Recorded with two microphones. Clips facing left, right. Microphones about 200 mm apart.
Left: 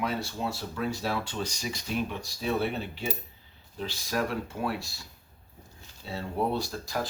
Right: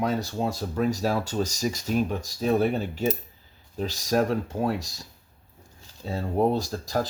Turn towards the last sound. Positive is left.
turn(degrees=-40)  # may be behind; listen again after turning